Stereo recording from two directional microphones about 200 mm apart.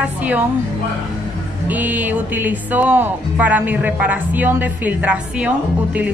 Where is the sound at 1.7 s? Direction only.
10° right (ahead or behind).